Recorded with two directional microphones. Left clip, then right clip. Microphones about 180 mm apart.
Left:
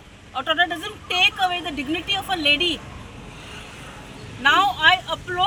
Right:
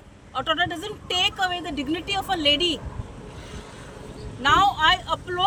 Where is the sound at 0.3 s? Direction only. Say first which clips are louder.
Left 3 dB; 20° right (ahead or behind).